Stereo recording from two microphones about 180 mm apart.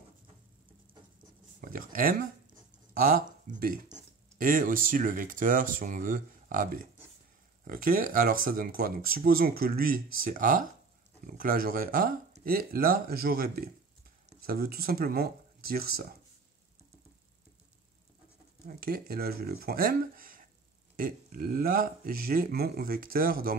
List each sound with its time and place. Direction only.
1.6 s speech: 50° right (ahead or behind)
18.7 s speech: 55° right (ahead or behind)